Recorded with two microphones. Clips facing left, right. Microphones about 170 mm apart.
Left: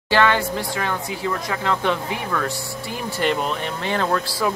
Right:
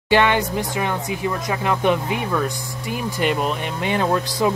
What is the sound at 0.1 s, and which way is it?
Speech, 15° right (ahead or behind).